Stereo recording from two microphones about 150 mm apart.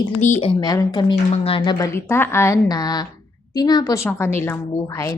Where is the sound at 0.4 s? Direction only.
25° left (ahead or behind).